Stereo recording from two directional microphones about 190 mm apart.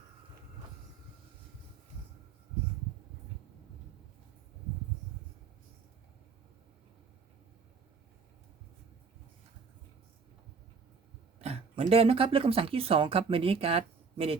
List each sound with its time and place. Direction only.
11.3 s speech: 35° right (ahead or behind)